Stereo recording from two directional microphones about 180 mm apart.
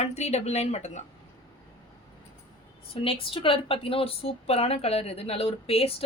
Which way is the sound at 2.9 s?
30° left (ahead or behind).